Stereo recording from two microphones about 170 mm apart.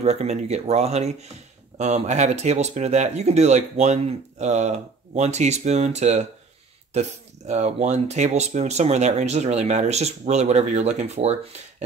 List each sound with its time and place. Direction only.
0.0 s speech: 40° right (ahead or behind)